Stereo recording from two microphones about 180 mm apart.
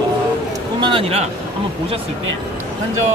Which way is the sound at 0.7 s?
30° right (ahead or behind).